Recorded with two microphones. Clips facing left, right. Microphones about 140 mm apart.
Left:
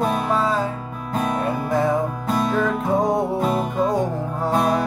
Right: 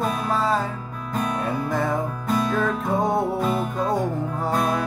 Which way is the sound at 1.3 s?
Centre (ahead or behind).